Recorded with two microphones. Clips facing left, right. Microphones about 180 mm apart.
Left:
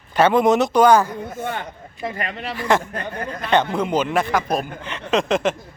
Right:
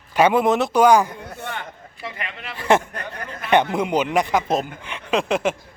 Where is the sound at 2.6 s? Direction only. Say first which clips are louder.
Right 2 dB; 20° right (ahead or behind).